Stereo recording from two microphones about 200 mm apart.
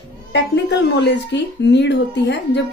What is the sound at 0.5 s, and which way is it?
A woman's voice, 60° left (ahead or behind).